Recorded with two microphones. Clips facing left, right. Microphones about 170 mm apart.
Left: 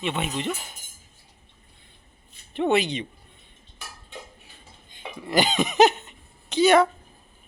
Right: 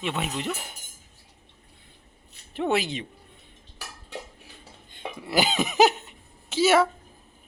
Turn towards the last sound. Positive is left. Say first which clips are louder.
# left 3 dB
turn(degrees=-5)  # may be behind; listen again after turning